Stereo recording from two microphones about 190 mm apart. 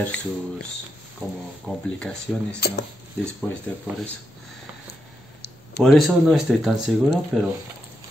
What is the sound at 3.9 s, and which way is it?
Speech, 5° right (ahead or behind).